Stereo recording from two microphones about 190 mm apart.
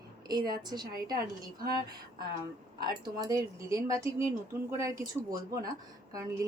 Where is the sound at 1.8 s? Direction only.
20° right (ahead or behind).